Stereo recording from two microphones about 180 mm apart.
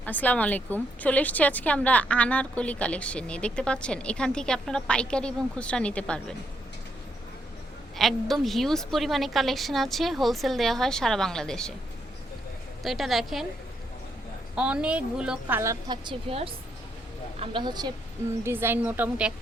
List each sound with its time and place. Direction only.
0.0 s a woman's voice: 10° left (ahead or behind)
7.9 s a woman's voice: centre (ahead or behind)
12.8 s a woman's voice: centre (ahead or behind)
14.5 s a woman's voice: 5° right (ahead or behind); by 17.9 s 25° right (ahead or behind)
18.4 s a woman's voice: 10° right (ahead or behind)